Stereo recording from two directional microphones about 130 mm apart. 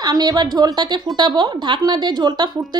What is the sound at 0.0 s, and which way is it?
A woman's voice, 30° right (ahead or behind).